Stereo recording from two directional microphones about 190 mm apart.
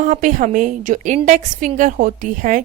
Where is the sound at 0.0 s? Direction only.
45° right (ahead or behind).